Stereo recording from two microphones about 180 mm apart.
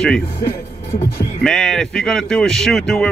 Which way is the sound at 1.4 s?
5° left (ahead or behind).